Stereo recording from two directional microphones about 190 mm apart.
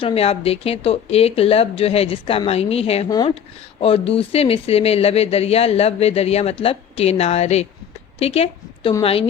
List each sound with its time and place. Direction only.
0.0 s speech: 30° left (ahead or behind)
3.1 s speech: 20° left (ahead or behind)
3.8 s speech: 30° left (ahead or behind)